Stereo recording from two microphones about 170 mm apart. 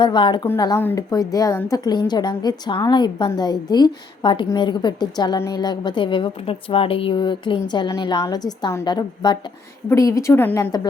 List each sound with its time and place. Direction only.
0.0 s a woman's voice: 25° left (ahead or behind)